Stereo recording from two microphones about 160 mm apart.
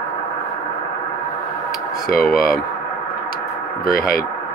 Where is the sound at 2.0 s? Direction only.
65° left (ahead or behind).